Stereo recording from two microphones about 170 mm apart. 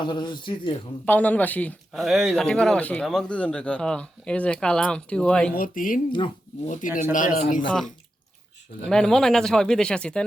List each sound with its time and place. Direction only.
0.0 s speech: 30° left (ahead or behind)
1.0 s speech: 10° left (ahead or behind)
5.5 s a man's voice: 55° left (ahead or behind)
6.1 s speech: 30° left (ahead or behind)
6.7 s a man's voice: 50° left (ahead or behind)
8.9 s speech: 5° left (ahead or behind)